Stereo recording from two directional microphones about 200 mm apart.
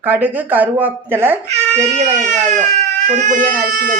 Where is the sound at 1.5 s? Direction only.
35° right (ahead or behind).